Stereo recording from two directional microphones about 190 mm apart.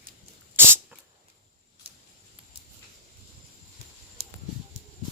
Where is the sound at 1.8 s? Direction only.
30° right (ahead or behind).